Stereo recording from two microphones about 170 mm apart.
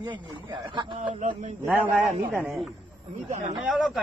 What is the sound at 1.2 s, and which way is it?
Speech, 45° right (ahead or behind).